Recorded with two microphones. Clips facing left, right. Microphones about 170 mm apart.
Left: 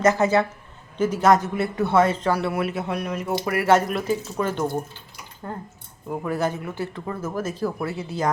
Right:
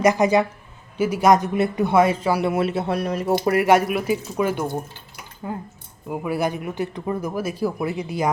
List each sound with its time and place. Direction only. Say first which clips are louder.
0.0 s a man's voice: right 2 dB; 15° right (ahead or behind); by 3.3 s 35° right (ahead or behind)
3.4 s speech: right 5 dB; 25° right (ahead or behind)
3.7 s a man's voice: left 2 dB; 10° right (ahead or behind)